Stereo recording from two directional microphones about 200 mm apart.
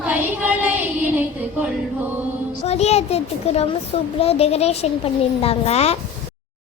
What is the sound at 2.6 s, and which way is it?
A child's voice, 35° left (ahead or behind).